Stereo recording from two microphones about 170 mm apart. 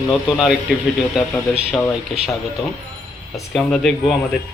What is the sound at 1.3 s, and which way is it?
Speech, 10° left (ahead or behind).